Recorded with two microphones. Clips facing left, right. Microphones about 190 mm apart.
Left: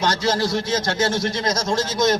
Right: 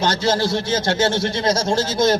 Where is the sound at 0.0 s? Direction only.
30° right (ahead or behind).